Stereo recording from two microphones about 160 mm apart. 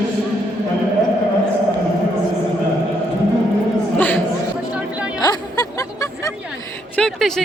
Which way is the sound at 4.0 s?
10° left (ahead or behind).